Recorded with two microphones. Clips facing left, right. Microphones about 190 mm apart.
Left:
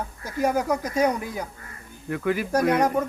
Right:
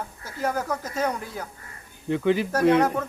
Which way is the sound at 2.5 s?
10° left (ahead or behind).